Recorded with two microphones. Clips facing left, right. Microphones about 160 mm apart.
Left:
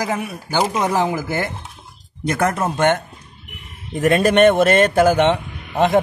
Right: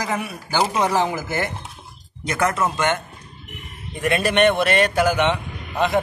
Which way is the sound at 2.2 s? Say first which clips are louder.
Left 2 dB; 55° left (ahead or behind).